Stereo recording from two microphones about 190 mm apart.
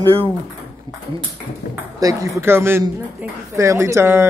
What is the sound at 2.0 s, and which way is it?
Speech, 15° right (ahead or behind).